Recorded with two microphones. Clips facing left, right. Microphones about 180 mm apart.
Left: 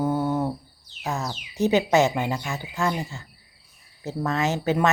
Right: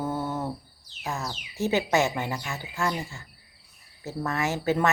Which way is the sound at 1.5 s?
20° left (ahead or behind).